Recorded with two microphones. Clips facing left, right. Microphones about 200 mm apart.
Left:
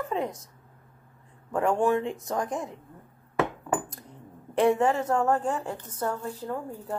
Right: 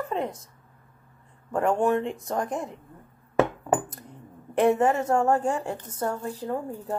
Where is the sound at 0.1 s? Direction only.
Centre (ahead or behind).